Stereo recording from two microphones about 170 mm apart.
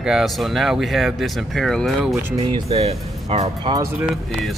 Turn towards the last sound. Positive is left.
turn(degrees=-20)  # may be behind; listen again after turning